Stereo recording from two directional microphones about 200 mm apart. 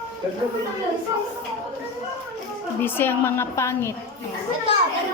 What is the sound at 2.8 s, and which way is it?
A child's voice, 10° left (ahead or behind).